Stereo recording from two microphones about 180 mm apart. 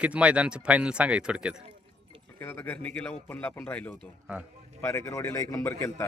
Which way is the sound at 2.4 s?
15° left (ahead or behind).